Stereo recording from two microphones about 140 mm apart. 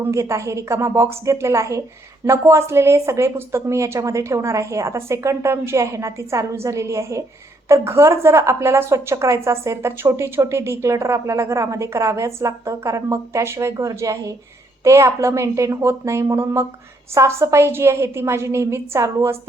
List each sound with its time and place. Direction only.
0.0 s a woman's voice: 20° right (ahead or behind)